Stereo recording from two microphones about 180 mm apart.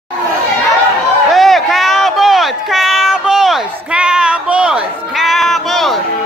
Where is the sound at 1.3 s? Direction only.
Centre (ahead or behind).